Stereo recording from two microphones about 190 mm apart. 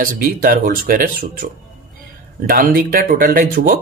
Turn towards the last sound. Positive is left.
turn(degrees=-50)  # may be behind; listen again after turning